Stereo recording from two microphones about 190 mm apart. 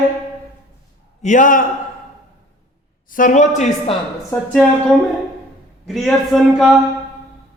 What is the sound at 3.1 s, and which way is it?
Speech, 45° left (ahead or behind).